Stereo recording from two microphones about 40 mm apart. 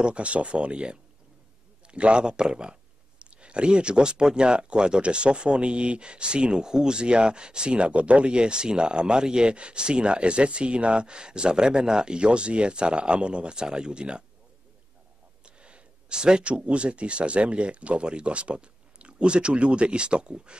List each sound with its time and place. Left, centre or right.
0.0 s speech: right
15.4 s speech: right